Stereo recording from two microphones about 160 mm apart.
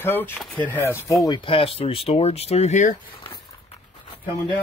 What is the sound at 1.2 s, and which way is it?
Speech, 30° left (ahead or behind).